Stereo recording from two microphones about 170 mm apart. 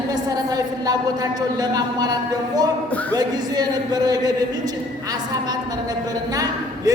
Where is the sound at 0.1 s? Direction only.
20° right (ahead or behind).